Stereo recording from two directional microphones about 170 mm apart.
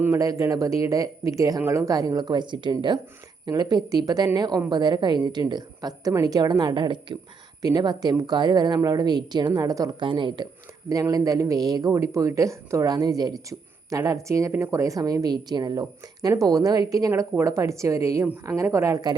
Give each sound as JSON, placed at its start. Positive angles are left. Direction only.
{"t": 0.0, "sound": "a woman's voice", "side_deg": -20}